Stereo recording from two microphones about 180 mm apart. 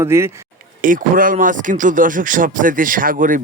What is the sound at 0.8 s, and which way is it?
Speech, 50° right (ahead or behind).